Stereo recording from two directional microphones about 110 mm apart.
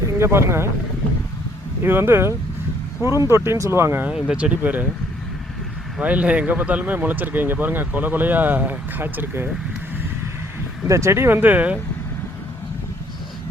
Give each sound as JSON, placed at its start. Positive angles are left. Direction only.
{"t": 0.2, "sound": "speech", "side_deg": -25}
{"t": 1.8, "sound": "speech", "side_deg": -20}
{"t": 4.1, "sound": "speech", "side_deg": -10}
{"t": 6.0, "sound": "speech", "side_deg": -10}
{"t": 10.8, "sound": "speech", "side_deg": -25}